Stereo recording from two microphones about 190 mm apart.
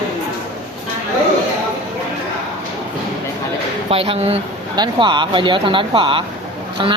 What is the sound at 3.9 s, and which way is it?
Speech, 30° right (ahead or behind).